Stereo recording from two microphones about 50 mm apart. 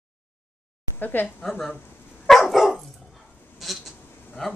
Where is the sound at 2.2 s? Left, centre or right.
Centre.